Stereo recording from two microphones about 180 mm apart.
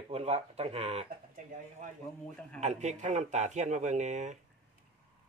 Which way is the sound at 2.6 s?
40° right (ahead or behind).